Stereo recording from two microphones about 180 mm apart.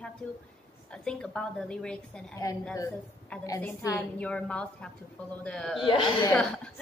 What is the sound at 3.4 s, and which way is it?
A woman's voice, 20° left (ahead or behind).